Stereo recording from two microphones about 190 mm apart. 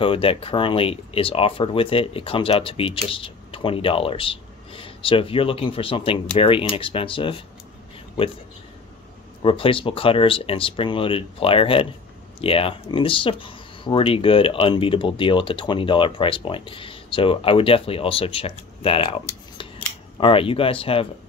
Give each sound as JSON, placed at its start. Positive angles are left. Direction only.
{"t": 0.0, "sound": "speech", "side_deg": 30}
{"t": 9.4, "sound": "speech", "side_deg": 25}
{"t": 19.2, "sound": "a sound", "side_deg": 25}
{"t": 20.2, "sound": "speech", "side_deg": 30}